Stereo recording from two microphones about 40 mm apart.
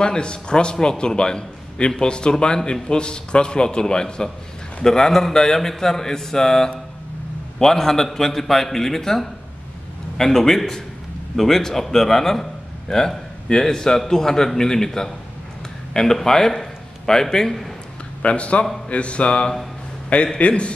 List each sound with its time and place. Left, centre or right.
0.0 s a man's voice: left
18.2 s a man's voice: left